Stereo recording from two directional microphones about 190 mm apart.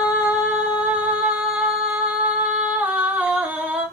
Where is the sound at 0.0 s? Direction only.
10° right (ahead or behind).